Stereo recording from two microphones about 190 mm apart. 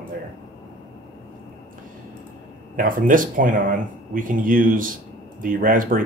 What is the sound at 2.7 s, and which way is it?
Speech, 45° right (ahead or behind).